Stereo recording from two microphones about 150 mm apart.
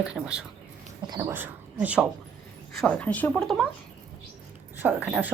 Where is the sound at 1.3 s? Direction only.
10° right (ahead or behind).